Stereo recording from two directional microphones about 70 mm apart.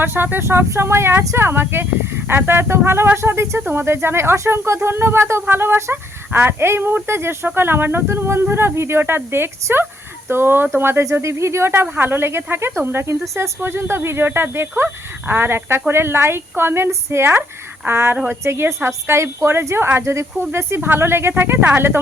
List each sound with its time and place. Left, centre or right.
0.0 s speech: right
3.6 s speech: right